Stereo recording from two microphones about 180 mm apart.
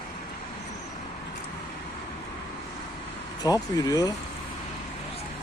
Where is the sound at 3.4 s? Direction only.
20° left (ahead or behind).